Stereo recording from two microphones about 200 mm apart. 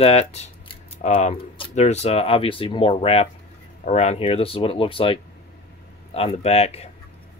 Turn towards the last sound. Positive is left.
turn(degrees=30)  # may be behind; listen again after turning